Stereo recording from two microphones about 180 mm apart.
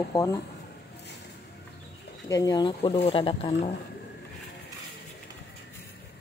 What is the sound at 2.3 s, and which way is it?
Speech, 20° left (ahead or behind).